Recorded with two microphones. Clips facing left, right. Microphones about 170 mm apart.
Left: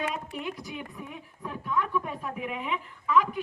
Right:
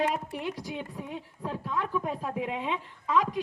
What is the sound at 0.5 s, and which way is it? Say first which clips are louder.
Speech: right 2 dB; 90° right.